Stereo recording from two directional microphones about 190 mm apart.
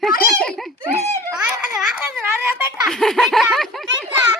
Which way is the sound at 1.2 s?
5° right (ahead or behind).